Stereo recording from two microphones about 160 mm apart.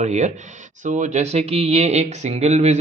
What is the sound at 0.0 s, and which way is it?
Speech, 45° right (ahead or behind).